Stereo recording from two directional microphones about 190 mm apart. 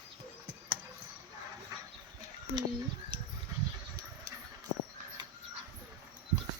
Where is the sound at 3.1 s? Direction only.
25° right (ahead or behind).